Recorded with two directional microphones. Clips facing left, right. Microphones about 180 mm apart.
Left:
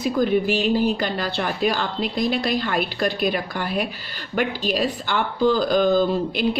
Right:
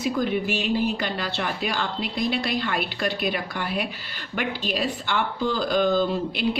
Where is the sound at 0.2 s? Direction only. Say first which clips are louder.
Left 5 dB; 40° left (ahead or behind).